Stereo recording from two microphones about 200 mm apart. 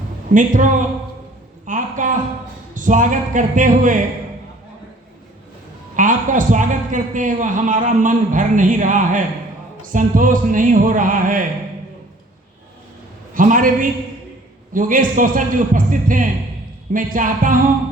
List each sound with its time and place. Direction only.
0.3 s a man's voice: 40° right (ahead or behind)
1.6 s a sound: 40° right (ahead or behind)
2.7 s a man's voice: 40° right (ahead or behind)
6.0 s a man's voice: 40° right (ahead or behind)
13.3 s a man's voice: 40° right (ahead or behind)